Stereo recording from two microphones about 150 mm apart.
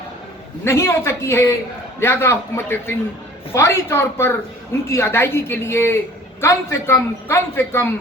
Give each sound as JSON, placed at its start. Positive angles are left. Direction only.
{"t": 0.6, "sound": "a man's voice", "side_deg": 20}